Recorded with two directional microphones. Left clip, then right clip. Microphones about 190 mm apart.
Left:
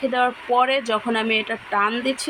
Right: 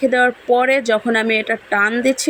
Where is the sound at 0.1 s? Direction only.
50° right (ahead or behind).